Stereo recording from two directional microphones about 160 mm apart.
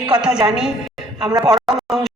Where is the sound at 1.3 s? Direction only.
25° right (ahead or behind).